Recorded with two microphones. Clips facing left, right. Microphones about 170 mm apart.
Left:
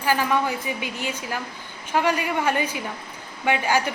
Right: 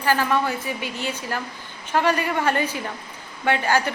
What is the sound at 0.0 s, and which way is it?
Speech, 10° left (ahead or behind).